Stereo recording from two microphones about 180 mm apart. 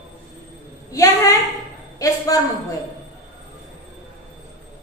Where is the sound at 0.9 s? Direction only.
15° left (ahead or behind).